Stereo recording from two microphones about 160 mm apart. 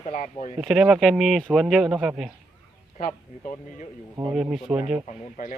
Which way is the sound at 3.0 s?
50° left (ahead or behind).